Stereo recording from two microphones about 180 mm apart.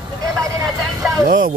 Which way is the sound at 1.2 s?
50° right (ahead or behind).